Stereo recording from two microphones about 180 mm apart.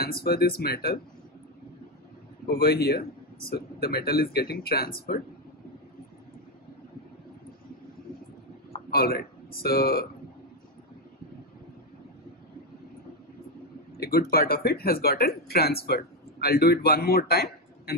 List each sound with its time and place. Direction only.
0.0 s a man's voice: 60° left (ahead or behind)
2.4 s a man's voice: 55° left (ahead or behind)
8.9 s speech: 55° left (ahead or behind)
13.9 s a sound: 55° left (ahead or behind)
14.3 s a man's voice: 55° left (ahead or behind)